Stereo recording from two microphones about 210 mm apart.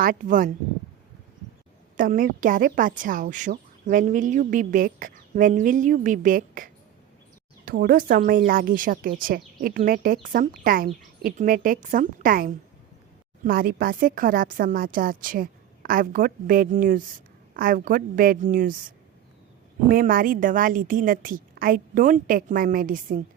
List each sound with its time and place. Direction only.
0.0 s speech: 40° right (ahead or behind)
2.0 s speech: 40° right (ahead or behind)
19.9 s speech: 45° right (ahead or behind)